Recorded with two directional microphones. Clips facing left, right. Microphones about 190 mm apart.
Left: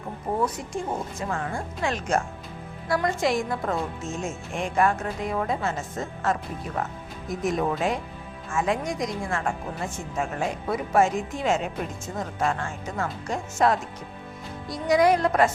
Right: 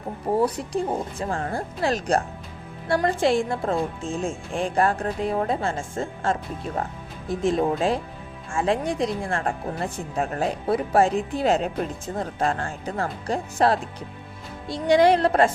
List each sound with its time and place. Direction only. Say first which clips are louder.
0.3 s a woman's voice: right 5 dB; 35° right (ahead or behind)